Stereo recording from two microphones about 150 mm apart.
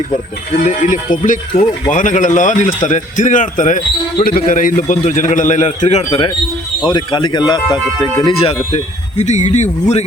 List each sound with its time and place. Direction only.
0.6 s speech: 55° left (ahead or behind)
6.1 s speech: 35° left (ahead or behind)
8.2 s speech: 40° left (ahead or behind)
9.1 s speech: 50° left (ahead or behind)